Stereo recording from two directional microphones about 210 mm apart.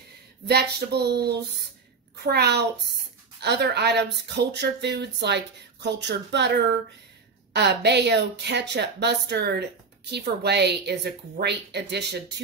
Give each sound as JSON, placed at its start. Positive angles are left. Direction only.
{"t": 0.5, "sound": "speech", "side_deg": -50}
{"t": 7.5, "sound": "speech", "side_deg": -55}